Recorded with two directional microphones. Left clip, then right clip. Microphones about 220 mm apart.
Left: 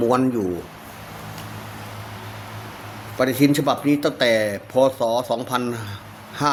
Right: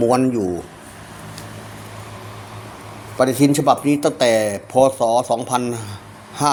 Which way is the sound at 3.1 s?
5° right (ahead or behind).